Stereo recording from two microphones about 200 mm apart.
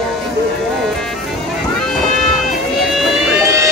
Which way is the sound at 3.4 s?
15° right (ahead or behind).